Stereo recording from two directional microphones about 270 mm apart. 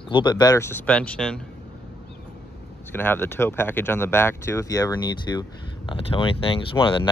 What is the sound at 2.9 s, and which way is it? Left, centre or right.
Speech, centre.